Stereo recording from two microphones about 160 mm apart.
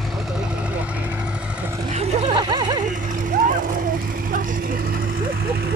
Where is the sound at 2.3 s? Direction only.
30° right (ahead or behind).